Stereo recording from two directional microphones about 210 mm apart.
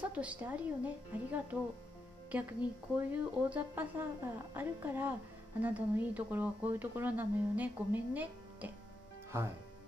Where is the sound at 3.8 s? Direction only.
10° right (ahead or behind).